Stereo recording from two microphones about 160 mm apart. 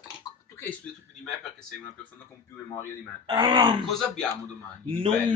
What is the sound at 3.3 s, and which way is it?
Speech, 25° right (ahead or behind).